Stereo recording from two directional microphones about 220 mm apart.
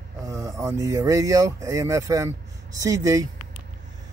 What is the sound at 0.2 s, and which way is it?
Speech, 15° right (ahead or behind).